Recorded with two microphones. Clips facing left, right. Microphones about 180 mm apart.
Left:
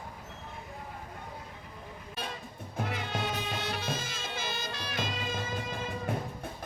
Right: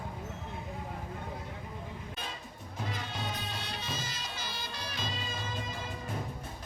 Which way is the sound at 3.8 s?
55° left (ahead or behind).